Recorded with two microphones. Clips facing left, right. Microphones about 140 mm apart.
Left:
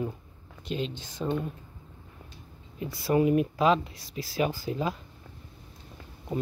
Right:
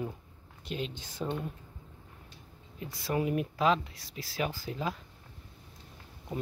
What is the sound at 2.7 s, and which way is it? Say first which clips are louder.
Speech: left 7 dB; 5° left (ahead or behind).